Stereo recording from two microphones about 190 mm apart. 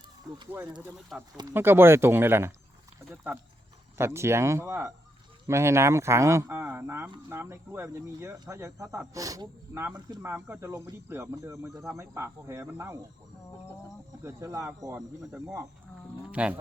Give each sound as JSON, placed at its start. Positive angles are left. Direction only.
{"t": 0.3, "sound": "speech", "side_deg": -20}
{"t": 3.9, "sound": "speech", "side_deg": -15}
{"t": 14.3, "sound": "speech", "side_deg": -15}
{"t": 14.9, "sound": "speech", "side_deg": 0}